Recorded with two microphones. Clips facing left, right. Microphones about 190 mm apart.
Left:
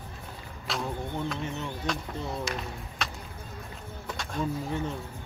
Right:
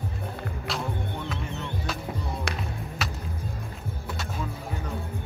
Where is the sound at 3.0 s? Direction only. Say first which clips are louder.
Right 2 dB; 5° right (ahead or behind).